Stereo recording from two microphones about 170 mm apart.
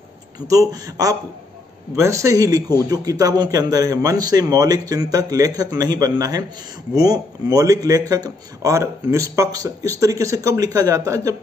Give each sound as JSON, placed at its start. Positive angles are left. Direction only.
{"t": 0.5, "sound": "speech", "side_deg": -20}